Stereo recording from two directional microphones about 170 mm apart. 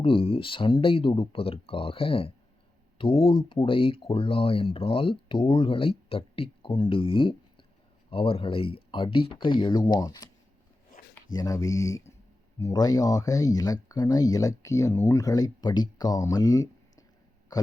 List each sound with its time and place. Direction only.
0.0 s speech: 30° left (ahead or behind)
11.3 s speech: 20° left (ahead or behind)
17.5 s a sound: 25° left (ahead or behind)